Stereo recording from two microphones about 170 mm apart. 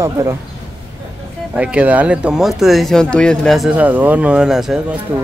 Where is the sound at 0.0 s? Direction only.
15° right (ahead or behind).